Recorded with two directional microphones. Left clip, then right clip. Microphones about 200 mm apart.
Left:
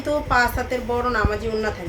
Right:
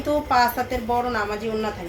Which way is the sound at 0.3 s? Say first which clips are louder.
Even; 10° left (ahead or behind).